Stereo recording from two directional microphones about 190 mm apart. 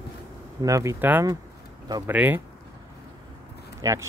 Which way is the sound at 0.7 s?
15° right (ahead or behind).